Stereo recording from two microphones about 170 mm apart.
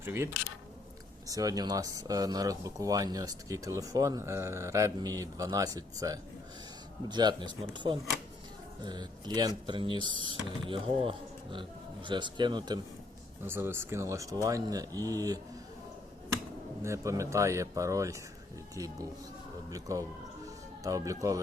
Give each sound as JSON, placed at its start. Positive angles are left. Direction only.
{"t": 0.0, "sound": "speech", "side_deg": -15}
{"t": 1.3, "sound": "speech", "side_deg": -20}
{"t": 13.4, "sound": "speech", "side_deg": -15}
{"t": 16.8, "sound": "speech", "side_deg": -15}